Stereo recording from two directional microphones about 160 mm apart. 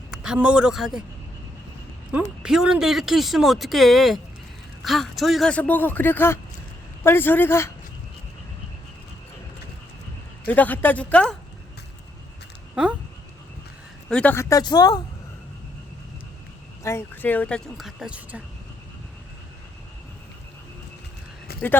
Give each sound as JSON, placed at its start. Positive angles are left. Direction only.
{"t": 0.1, "sound": "a man's voice", "side_deg": -5}
{"t": 2.4, "sound": "a man's voice", "side_deg": -5}
{"t": 10.4, "sound": "a man's voice", "side_deg": 10}
{"t": 12.7, "sound": "speech", "side_deg": -5}
{"t": 14.1, "sound": "a man's voice", "side_deg": 10}
{"t": 14.6, "sound": "speech", "side_deg": 25}
{"t": 16.8, "sound": "a man's voice", "side_deg": 15}